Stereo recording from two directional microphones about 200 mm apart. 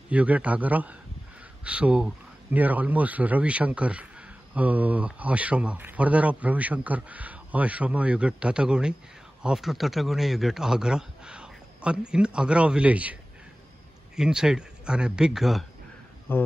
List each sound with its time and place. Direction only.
0.1 s a man's voice: 5° right (ahead or behind)
16.3 s speech: 10° left (ahead or behind)